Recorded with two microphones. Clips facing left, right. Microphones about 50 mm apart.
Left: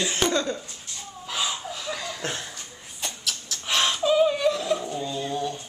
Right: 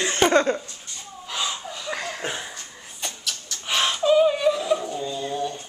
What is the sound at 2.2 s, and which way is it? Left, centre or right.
Dog, centre.